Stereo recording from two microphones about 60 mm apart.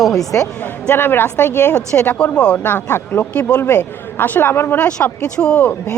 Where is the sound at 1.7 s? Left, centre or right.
Left.